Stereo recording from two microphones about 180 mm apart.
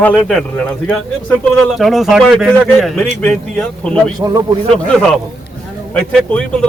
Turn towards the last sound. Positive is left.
turn(degrees=5)  # may be behind; listen again after turning